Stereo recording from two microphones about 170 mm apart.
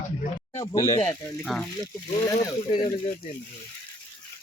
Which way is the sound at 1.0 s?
5° left (ahead or behind).